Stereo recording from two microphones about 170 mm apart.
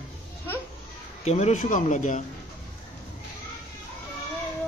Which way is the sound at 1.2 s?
40° left (ahead or behind).